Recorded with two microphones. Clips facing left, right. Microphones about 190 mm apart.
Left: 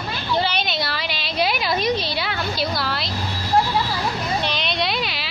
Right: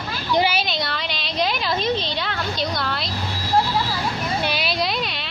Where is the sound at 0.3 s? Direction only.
15° right (ahead or behind).